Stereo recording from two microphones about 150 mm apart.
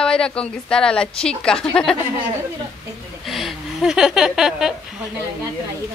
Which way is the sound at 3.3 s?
Centre (ahead or behind).